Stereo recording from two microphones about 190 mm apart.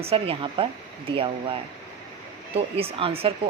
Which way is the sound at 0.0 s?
30° right (ahead or behind).